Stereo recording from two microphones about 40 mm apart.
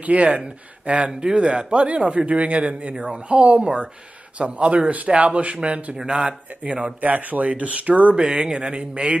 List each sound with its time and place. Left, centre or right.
0.0 s speech: right
0.3 s a man's voice: right
7.0 s speech: right
8.2 s a man's voice: centre